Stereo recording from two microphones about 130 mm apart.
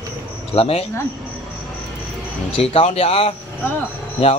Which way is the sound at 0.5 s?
50° left (ahead or behind).